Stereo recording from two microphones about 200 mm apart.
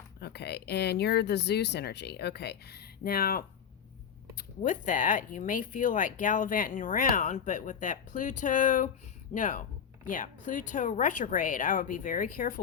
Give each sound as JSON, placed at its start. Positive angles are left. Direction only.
{"t": 0.2, "sound": "speech", "side_deg": 55}